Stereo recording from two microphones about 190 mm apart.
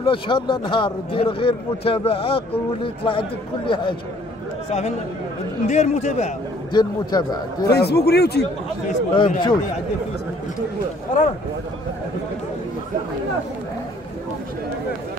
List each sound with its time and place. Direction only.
0.0 s a man's voice: 25° left (ahead or behind)
6.7 s a man's voice: 20° left (ahead or behind)
7.7 s speech: 60° left (ahead or behind)
9.1 s a man's voice: 25° left (ahead or behind)